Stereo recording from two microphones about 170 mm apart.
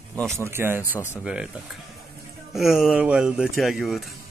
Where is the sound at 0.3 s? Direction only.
15° right (ahead or behind).